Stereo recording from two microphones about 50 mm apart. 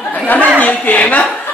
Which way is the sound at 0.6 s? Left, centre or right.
Left.